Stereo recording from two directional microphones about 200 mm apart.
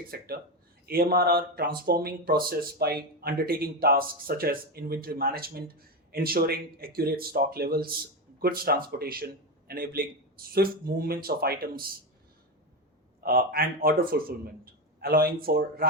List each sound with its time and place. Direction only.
0.1 s speech: 50° right (ahead or behind)
13.2 s speech: 50° right (ahead or behind)